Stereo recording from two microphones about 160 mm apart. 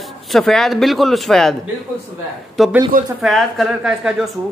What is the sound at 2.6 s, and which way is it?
Speech, centre (ahead or behind).